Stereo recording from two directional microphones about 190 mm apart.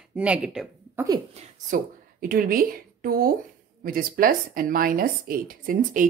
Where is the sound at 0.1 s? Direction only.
5° right (ahead or behind).